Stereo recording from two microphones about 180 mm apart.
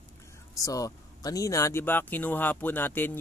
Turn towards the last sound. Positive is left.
turn(degrees=10)  # may be behind; listen again after turning